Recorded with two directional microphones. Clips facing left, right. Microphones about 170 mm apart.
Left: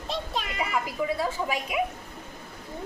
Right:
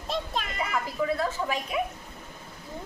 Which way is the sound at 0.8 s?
10° left (ahead or behind).